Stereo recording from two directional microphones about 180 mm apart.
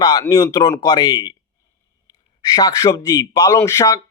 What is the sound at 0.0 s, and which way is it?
Speech, 20° left (ahead or behind).